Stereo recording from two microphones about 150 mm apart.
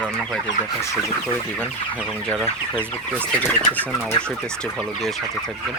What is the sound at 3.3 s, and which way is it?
Speech, 10° left (ahead or behind).